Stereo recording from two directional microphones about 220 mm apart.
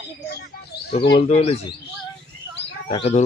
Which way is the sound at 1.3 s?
30° left (ahead or behind).